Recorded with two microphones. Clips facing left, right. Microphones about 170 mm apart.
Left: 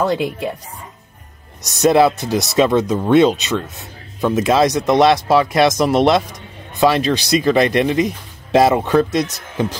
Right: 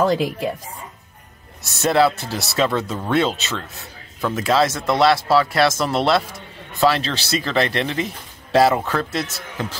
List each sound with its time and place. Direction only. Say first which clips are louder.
1.6 s speech: left 4 dB; 15° left (ahead or behind)